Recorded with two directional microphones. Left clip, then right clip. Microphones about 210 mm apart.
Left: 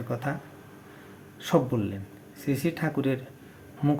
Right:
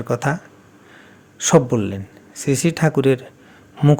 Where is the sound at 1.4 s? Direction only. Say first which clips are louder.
Right 10 dB; 50° right (ahead or behind).